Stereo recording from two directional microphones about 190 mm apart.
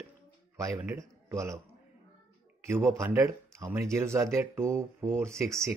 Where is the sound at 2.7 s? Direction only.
15° right (ahead or behind).